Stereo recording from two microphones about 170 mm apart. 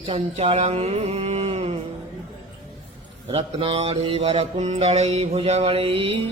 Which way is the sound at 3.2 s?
35° right (ahead or behind).